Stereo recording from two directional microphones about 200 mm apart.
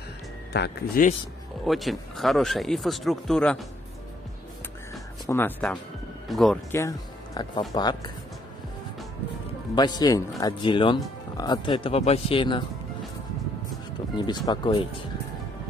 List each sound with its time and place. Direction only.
0.5 s speech: 55° left (ahead or behind)
1.7 s speech: centre (ahead or behind)
5.2 s speech: 10° left (ahead or behind)
7.4 s speech: 20° left (ahead or behind)
9.8 s speech: 20° left (ahead or behind)
14.1 s speech: 20° left (ahead or behind)